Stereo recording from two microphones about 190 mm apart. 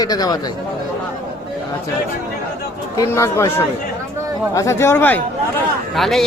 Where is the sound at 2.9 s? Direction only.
15° left (ahead or behind).